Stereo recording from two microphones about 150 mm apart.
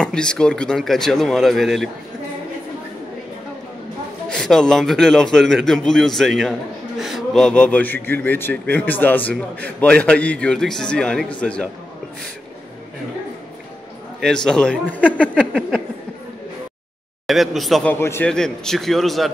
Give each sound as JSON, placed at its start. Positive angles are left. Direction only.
{"t": 0.0, "sound": "a man's voice", "side_deg": 5}
{"t": 4.3, "sound": "a man's voice", "side_deg": 5}
{"t": 14.2, "sound": "speech", "side_deg": 5}
{"t": 17.3, "sound": "a man's voice", "side_deg": 0}
{"t": 17.9, "sound": "a man's voice", "side_deg": 15}
{"t": 18.3, "sound": "a man's voice", "side_deg": 5}